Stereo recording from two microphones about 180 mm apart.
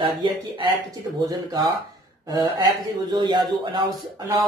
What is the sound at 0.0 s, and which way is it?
Speech, 25° right (ahead or behind).